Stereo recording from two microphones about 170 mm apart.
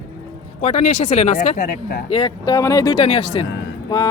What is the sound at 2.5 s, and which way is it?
Speech, 20° left (ahead or behind).